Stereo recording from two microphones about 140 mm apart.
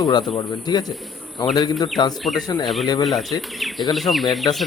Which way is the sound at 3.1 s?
Centre (ahead or behind).